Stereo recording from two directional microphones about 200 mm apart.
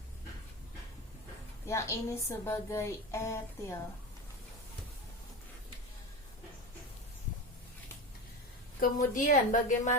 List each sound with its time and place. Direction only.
1.6 s a woman's voice: 15° left (ahead or behind)
8.8 s a woman's voice: 40° left (ahead or behind)